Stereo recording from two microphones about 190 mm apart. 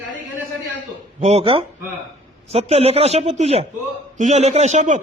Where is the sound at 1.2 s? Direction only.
35° right (ahead or behind).